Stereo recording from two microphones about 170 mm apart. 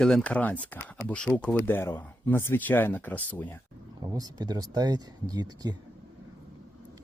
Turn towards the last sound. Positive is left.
turn(degrees=-25)  # may be behind; listen again after turning